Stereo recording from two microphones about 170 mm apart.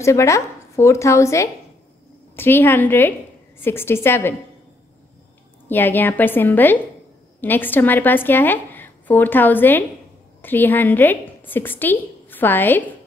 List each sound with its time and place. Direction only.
0.0 s speech: 15° left (ahead or behind)
5.7 s a woman's voice: 10° left (ahead or behind)